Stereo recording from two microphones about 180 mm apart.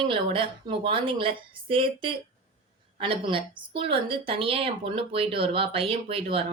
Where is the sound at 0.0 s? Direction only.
30° right (ahead or behind).